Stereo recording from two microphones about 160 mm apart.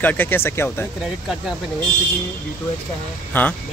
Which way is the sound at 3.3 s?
10° left (ahead or behind).